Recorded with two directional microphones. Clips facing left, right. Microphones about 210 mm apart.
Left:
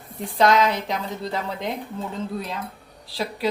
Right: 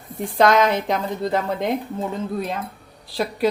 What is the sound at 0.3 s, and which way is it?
Speech, 50° right (ahead or behind).